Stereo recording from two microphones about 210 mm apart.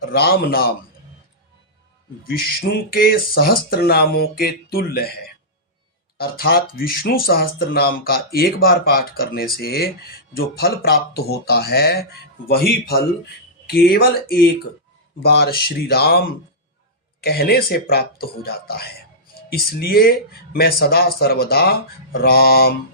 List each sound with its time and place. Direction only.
0.0 s speech: 45° left (ahead or behind)
2.2 s speech: 45° left (ahead or behind)